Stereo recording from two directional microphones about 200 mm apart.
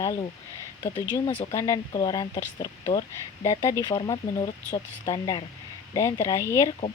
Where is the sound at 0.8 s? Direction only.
20° left (ahead or behind).